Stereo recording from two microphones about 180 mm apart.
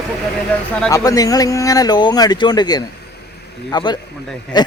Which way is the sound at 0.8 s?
20° left (ahead or behind).